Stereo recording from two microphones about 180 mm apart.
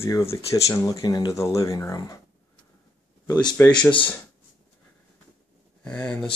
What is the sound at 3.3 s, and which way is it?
Speech, 25° left (ahead or behind).